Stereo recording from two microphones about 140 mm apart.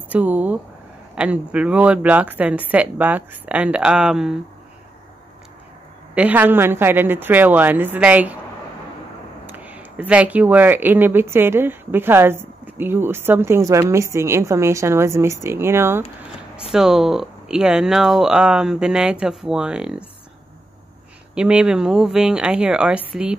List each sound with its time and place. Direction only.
0.1 s speech: 10° right (ahead or behind)
6.1 s speech: 10° right (ahead or behind)
9.5 s speech: 10° right (ahead or behind)
16.7 s speech: 5° right (ahead or behind)
21.4 s speech: 5° right (ahead or behind)